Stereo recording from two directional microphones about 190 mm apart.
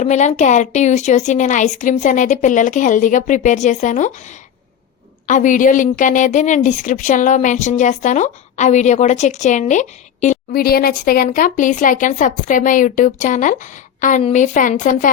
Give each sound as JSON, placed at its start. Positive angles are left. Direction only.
{"t": 0.0, "sound": "a woman's voice", "side_deg": 40}
{"t": 5.3, "sound": "a woman's voice", "side_deg": 40}